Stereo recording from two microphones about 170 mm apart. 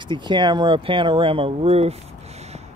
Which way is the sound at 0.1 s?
25° right (ahead or behind).